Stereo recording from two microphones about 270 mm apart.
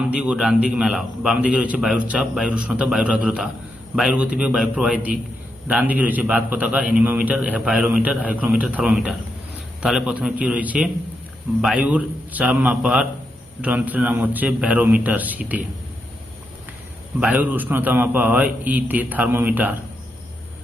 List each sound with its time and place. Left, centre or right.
0.0 s a man's voice: centre
17.2 s a man's voice: centre